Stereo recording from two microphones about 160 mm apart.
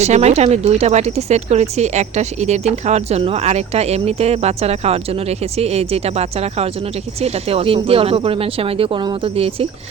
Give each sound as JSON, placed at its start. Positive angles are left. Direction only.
{"t": 0.0, "sound": "speech", "side_deg": -45}